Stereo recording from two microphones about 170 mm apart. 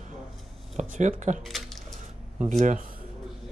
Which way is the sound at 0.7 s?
45° right (ahead or behind).